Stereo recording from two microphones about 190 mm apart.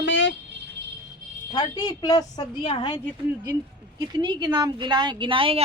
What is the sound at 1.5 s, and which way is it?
A woman's voice, 25° left (ahead or behind).